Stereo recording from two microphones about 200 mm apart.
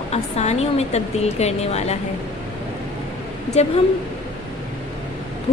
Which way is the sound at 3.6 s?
35° left (ahead or behind).